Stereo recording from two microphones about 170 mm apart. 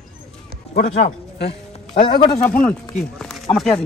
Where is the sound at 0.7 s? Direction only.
75° left (ahead or behind).